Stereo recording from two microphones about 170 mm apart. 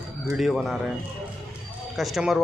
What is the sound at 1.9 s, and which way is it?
Speech, centre (ahead or behind).